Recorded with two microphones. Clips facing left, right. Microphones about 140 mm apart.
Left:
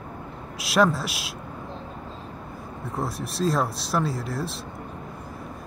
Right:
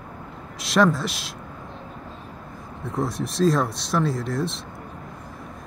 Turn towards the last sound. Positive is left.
turn(degrees=5)  # may be behind; listen again after turning